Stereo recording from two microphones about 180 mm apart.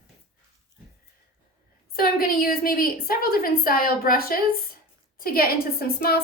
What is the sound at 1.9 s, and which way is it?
A woman's voice, 55° left (ahead or behind).